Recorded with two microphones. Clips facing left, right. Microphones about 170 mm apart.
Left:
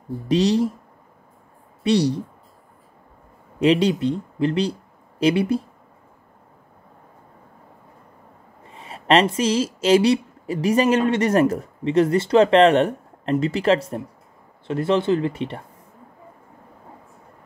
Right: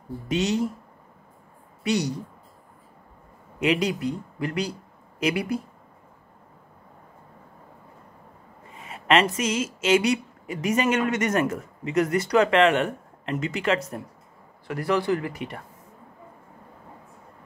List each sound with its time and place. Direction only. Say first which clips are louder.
0.3 s speech: left 6 dB; 35° left (ahead or behind)
1.8 s a woman's voice: left 6 dB; 30° left (ahead or behind)
3.5 s speech: left 6 dB; 30° left (ahead or behind)
8.7 s speech: left 4 dB; 30° left (ahead or behind)